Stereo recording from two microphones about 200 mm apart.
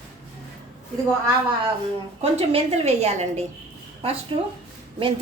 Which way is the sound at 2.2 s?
30° right (ahead or behind).